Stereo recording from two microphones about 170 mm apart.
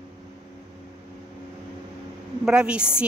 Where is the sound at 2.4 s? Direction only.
5° right (ahead or behind).